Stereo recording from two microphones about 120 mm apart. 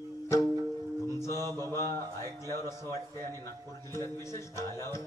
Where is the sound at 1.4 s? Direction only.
30° right (ahead or behind).